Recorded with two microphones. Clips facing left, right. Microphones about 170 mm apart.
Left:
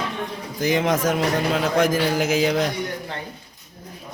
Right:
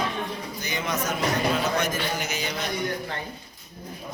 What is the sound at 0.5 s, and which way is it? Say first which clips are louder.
A man's voice: left 11 dB; 90° left.